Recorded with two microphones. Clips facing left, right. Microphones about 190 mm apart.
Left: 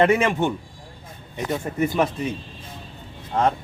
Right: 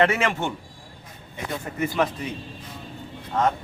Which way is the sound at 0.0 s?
15° left (ahead or behind).